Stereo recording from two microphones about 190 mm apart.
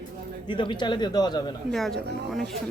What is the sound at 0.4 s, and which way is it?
A man's voice, 25° left (ahead or behind).